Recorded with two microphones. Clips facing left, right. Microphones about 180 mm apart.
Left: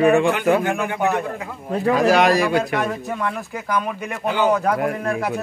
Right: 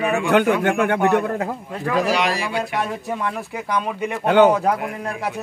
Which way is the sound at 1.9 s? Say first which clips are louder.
Left 4 dB; 50° left (ahead or behind).